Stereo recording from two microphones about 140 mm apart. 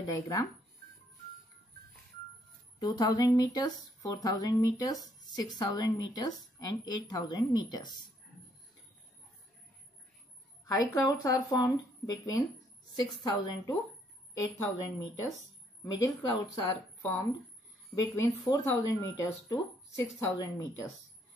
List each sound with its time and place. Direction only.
0.0 s speech: 25° left (ahead or behind)
2.8 s speech: 25° left (ahead or behind)
10.6 s speech: 25° left (ahead or behind)
20.3 s speech: 25° left (ahead or behind)